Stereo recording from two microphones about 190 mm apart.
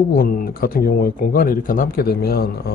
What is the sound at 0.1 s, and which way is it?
Speech, 50° left (ahead or behind).